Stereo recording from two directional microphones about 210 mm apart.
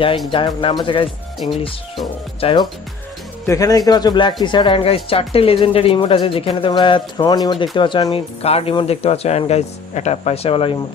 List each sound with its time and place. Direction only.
0.3 s speech: 25° left (ahead or behind)